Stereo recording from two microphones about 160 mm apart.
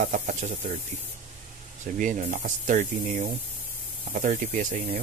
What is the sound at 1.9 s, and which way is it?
Speech, 55° right (ahead or behind).